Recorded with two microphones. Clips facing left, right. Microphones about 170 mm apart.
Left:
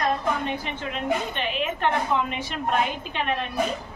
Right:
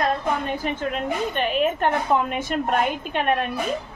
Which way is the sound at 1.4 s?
45° right (ahead or behind).